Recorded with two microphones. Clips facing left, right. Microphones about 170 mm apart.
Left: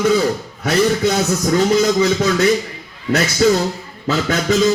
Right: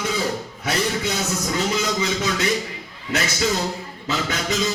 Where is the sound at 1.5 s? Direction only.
50° left (ahead or behind).